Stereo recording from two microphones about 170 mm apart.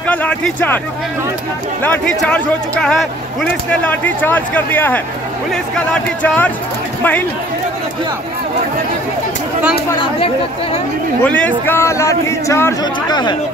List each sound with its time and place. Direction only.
0.0 s speech: 10° left (ahead or behind)
1.8 s a man's voice: 10° left (ahead or behind)
6.2 s a man's voice: 10° left (ahead or behind)
11.2 s a man's voice: 10° left (ahead or behind)
13.1 s speech: 25° left (ahead or behind)